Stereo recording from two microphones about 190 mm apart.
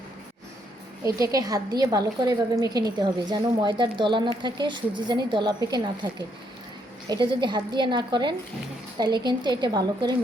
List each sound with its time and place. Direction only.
1.0 s a woman's voice: 20° right (ahead or behind)